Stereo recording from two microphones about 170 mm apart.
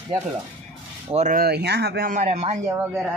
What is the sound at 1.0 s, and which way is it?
Speech, 40° right (ahead or behind).